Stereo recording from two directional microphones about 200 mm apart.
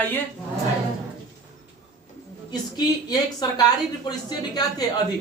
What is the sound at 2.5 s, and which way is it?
A woman's voice, 20° left (ahead or behind).